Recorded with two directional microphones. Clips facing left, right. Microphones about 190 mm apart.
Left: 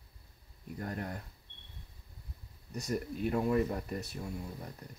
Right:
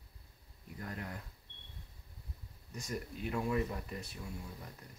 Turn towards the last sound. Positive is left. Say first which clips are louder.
# left 6 dB
turn(degrees=40)  # may be behind; listen again after turning